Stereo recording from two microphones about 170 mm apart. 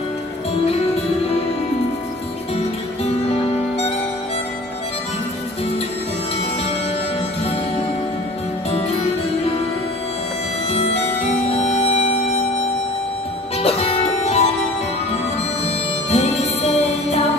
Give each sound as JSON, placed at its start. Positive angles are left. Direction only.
{"t": 2.5, "sound": "music", "side_deg": 40}
{"t": 10.7, "sound": "music", "side_deg": 35}
{"t": 13.6, "sound": "music", "side_deg": 35}
{"t": 15.6, "sound": "music", "side_deg": 35}